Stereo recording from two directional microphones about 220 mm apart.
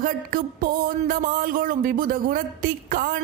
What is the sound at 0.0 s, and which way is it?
Speech, 40° right (ahead or behind).